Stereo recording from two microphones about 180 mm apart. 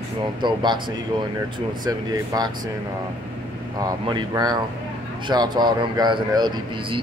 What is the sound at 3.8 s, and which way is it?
Speech, 20° right (ahead or behind).